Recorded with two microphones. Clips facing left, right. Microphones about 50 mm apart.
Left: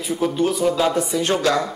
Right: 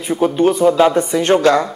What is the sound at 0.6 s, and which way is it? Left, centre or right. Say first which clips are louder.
Speech: right 7 dB; centre.